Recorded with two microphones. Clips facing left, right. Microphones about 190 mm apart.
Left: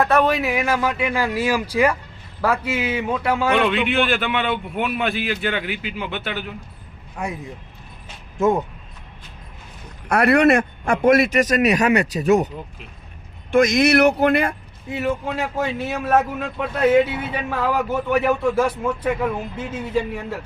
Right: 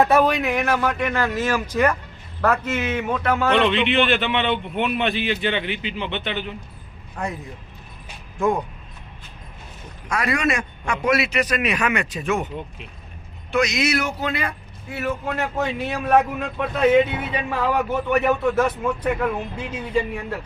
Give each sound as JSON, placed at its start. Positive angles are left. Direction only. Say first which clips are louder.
{"t": 0.2, "sound": "a man's voice", "louder": "even", "side_deg": 0}
{"t": 10.1, "sound": "a man's voice", "louder": "left 8 dB", "side_deg": 60}
{"t": 13.5, "sound": "speech", "louder": "left 6 dB", "side_deg": 50}
{"t": 14.8, "sound": "a man's voice", "louder": "left 3 dB", "side_deg": 15}
{"t": 15.2, "sound": "a man's voice", "louder": "left 1 dB", "side_deg": 5}